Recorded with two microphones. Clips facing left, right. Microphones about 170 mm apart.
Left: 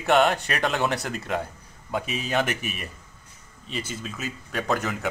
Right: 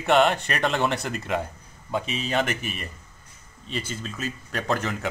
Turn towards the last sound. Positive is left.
turn(degrees=5)  # may be behind; listen again after turning